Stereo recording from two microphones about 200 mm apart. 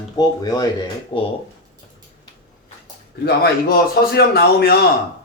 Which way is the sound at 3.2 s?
50° left (ahead or behind).